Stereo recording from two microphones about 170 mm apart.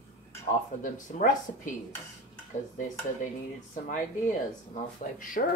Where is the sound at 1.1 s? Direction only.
50° left (ahead or behind).